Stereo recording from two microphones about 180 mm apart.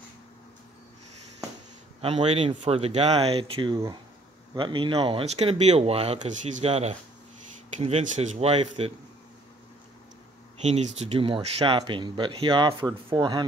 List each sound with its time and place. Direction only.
2.0 s speech: 30° right (ahead or behind)
10.6 s speech: 40° right (ahead or behind)